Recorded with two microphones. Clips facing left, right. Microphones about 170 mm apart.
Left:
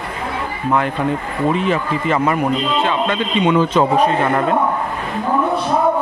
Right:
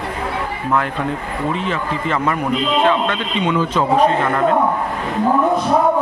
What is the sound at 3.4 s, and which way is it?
Speech, 20° left (ahead or behind).